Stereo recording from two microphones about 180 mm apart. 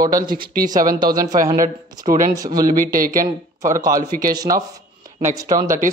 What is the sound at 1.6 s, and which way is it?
Speech, 50° right (ahead or behind).